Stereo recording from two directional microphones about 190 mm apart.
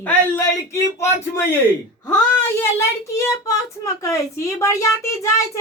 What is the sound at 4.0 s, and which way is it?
A woman's voice, 15° left (ahead or behind).